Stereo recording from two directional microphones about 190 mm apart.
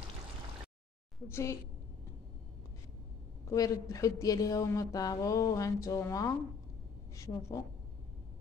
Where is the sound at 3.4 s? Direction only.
20° left (ahead or behind).